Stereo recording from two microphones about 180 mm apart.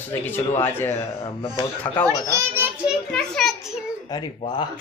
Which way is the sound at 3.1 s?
Centre (ahead or behind).